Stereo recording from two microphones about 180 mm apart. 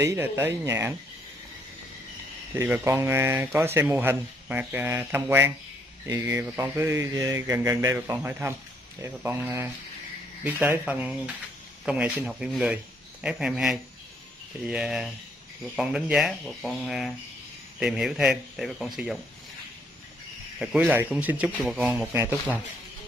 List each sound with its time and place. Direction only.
0.0 s speech: 15° right (ahead or behind)
2.5 s speech: 15° right (ahead or behind)
20.5 s speech: 5° right (ahead or behind)